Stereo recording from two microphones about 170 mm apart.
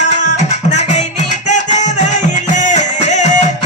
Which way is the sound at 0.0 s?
45° left (ahead or behind).